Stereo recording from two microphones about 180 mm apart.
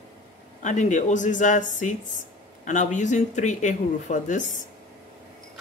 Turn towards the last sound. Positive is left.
turn(degrees=45)  # may be behind; listen again after turning